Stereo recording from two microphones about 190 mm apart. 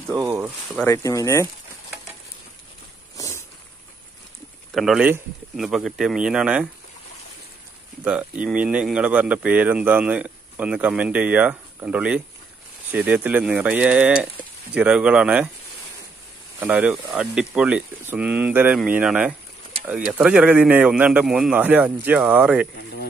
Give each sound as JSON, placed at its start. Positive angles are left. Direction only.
{"t": 0.1, "sound": "speech", "side_deg": -10}
{"t": 0.8, "sound": "speech", "side_deg": 15}
{"t": 3.2, "sound": "a sound", "side_deg": 15}
{"t": 4.7, "sound": "a man's voice", "side_deg": 0}
{"t": 8.0, "sound": "speech", "side_deg": -5}
{"t": 16.5, "sound": "a man's voice", "side_deg": -10}